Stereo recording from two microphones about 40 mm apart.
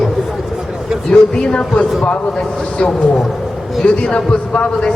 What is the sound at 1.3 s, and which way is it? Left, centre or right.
Speech, left.